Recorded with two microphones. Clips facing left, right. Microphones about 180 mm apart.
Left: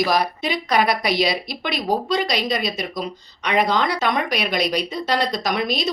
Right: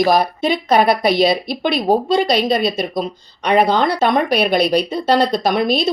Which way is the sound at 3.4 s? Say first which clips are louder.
Right 6 dB; 30° right (ahead or behind).